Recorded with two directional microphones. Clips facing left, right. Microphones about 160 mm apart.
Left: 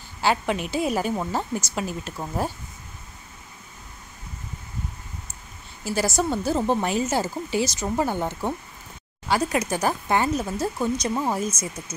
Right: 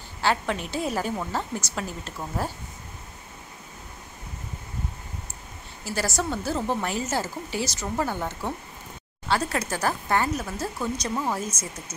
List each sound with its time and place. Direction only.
0.2 s a woman's voice: 15° left (ahead or behind)
5.9 s a woman's voice: 15° left (ahead or behind)